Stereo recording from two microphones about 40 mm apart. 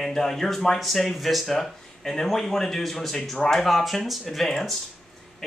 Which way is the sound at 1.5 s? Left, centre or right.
Centre.